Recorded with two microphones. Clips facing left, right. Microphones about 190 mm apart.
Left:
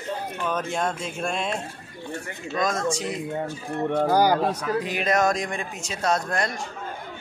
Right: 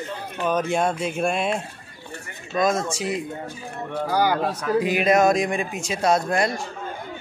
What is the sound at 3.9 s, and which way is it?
Speech, 50° left (ahead or behind).